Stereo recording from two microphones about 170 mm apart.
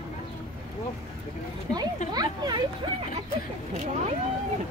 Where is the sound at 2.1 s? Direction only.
25° right (ahead or behind).